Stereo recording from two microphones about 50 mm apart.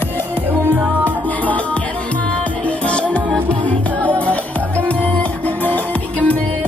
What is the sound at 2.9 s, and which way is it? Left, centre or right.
Music, left.